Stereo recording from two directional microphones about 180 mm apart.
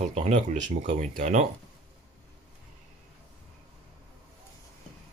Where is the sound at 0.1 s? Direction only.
40° right (ahead or behind).